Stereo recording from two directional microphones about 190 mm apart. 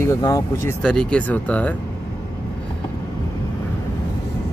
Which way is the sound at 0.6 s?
5° left (ahead or behind).